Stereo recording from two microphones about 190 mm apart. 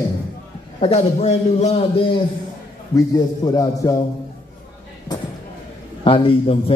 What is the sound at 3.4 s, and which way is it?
Speech, 20° left (ahead or behind).